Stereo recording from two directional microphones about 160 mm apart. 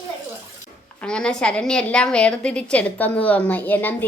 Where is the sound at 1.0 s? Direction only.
5° left (ahead or behind).